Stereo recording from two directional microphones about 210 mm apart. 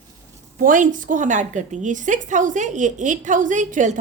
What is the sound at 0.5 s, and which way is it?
A woman's voice, 40° right (ahead or behind).